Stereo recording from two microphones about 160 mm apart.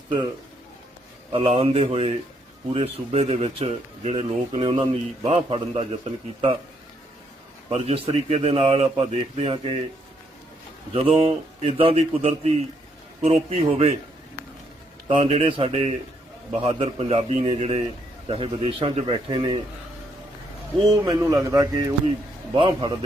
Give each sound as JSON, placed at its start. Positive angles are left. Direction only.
{"t": 1.3, "sound": "speech", "side_deg": -35}
{"t": 7.7, "sound": "speech", "side_deg": -40}
{"t": 10.9, "sound": "speech", "side_deg": -35}
{"t": 15.0, "sound": "speech", "side_deg": -40}
{"t": 20.7, "sound": "speech", "side_deg": -25}